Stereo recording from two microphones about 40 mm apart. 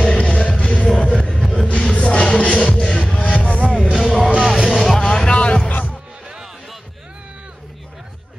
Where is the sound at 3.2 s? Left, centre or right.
Left.